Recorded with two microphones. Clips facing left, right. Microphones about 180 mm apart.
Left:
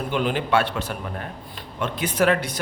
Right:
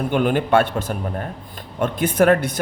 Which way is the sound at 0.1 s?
50° right (ahead or behind).